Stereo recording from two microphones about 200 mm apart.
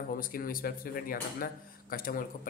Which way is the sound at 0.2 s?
45° left (ahead or behind).